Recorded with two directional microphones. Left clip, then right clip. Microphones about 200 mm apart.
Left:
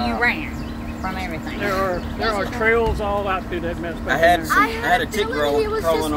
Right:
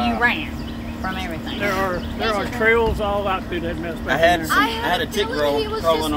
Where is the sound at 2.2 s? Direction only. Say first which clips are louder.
Right 1 dB; 50° right (ahead or behind).